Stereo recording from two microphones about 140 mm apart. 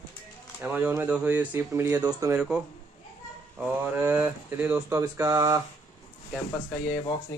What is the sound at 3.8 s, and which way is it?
Speech, 15° right (ahead or behind).